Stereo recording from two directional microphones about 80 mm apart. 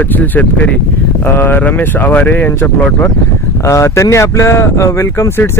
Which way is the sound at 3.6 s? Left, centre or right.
Left.